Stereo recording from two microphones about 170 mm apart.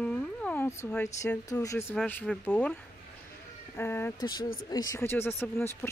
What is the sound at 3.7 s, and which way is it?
A woman's voice, 15° left (ahead or behind).